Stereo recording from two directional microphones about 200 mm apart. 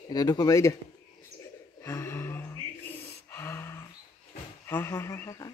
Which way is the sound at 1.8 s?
15° left (ahead or behind).